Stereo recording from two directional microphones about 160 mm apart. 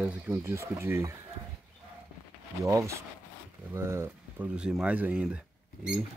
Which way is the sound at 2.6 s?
20° right (ahead or behind).